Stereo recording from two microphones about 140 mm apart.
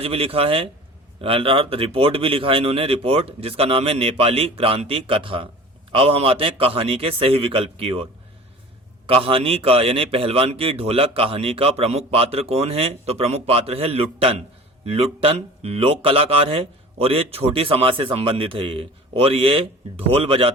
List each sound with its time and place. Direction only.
0.0 s a man's voice: 45° right (ahead or behind)
9.0 s a man's voice: 40° right (ahead or behind)